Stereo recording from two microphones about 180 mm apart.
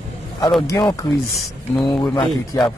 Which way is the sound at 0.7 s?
15° left (ahead or behind).